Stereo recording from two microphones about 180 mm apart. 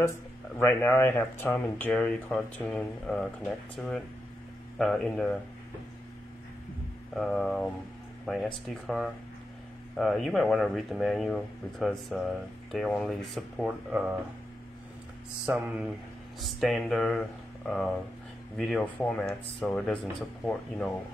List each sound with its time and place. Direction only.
0.6 s speech: 15° left (ahead or behind)
7.2 s speech: centre (ahead or behind)
15.4 s mantra: 5° right (ahead or behind)
16.3 s speech: centre (ahead or behind)